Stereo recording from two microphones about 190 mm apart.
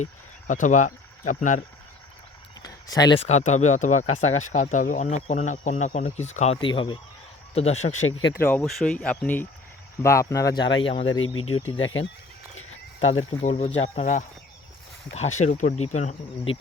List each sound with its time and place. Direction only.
0.0 s speech: 40° left (ahead or behind)
2.6 s a sound: 20° left (ahead or behind)
3.2 s speech: 35° left (ahead or behind)
8.3 s speech: 10° left (ahead or behind); by 11.0 s 25° left (ahead or behind)
11.2 s speech: 90° left
13.1 s speech: 35° left (ahead or behind)
15.4 s speech: 40° left (ahead or behind)